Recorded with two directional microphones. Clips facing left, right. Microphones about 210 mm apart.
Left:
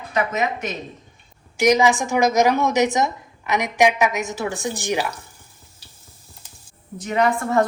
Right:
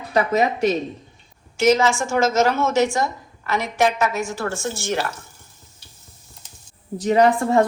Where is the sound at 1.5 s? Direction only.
15° left (ahead or behind).